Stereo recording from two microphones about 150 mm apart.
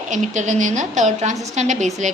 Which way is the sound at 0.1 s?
55° right (ahead or behind).